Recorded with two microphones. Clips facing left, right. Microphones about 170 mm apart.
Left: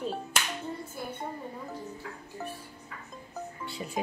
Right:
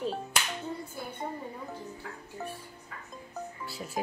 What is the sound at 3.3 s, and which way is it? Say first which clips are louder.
Music: left 1 dB; centre (ahead or behind).